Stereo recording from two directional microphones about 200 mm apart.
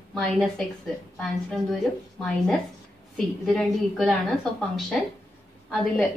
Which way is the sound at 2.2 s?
5° left (ahead or behind).